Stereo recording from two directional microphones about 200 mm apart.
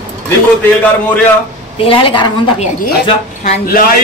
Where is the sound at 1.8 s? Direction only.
25° left (ahead or behind).